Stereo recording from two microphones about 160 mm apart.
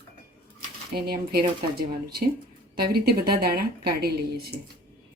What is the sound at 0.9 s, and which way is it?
Speech, 75° right (ahead or behind).